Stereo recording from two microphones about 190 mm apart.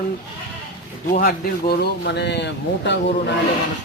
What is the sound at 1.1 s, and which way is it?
Speech, 50° left (ahead or behind).